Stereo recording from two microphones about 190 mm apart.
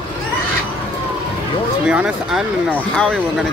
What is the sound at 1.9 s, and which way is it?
Speech, 5° right (ahead or behind).